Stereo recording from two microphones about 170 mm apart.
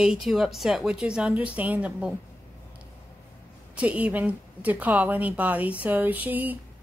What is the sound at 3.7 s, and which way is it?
A woman's voice, 10° right (ahead or behind).